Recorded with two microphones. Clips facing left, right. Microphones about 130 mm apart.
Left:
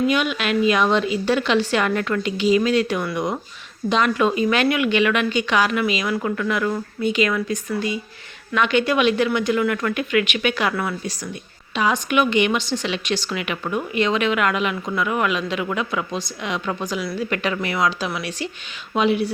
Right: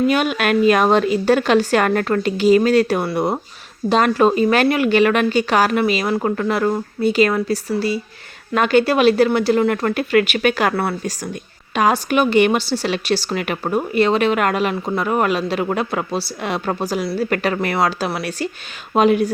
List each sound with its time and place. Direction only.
0.1 s a woman's voice: 45° right (ahead or behind)